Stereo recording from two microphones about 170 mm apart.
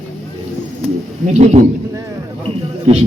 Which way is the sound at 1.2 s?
40° right (ahead or behind).